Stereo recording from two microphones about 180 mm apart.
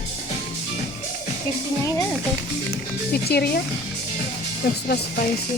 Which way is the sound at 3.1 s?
55° left (ahead or behind).